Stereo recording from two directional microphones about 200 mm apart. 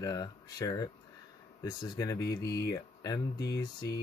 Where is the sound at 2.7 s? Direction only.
15° left (ahead or behind).